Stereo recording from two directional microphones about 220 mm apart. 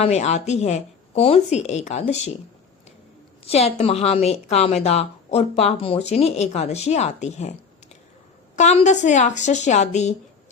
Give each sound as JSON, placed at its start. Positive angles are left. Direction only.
{"t": 0.0, "sound": "a woman's voice", "side_deg": 30}
{"t": 3.4, "sound": "a woman's voice", "side_deg": 25}
{"t": 8.5, "sound": "a woman's voice", "side_deg": 30}